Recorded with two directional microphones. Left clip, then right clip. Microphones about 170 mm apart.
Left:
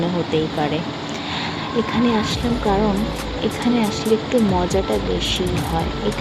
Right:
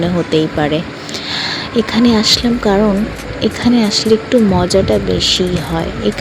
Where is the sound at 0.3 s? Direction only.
40° right (ahead or behind).